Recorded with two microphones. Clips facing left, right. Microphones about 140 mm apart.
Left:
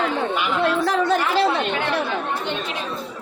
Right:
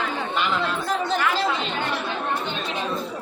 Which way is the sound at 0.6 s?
85° left.